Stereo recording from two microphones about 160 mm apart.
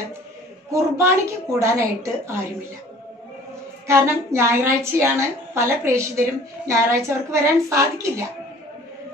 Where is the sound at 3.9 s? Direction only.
15° right (ahead or behind).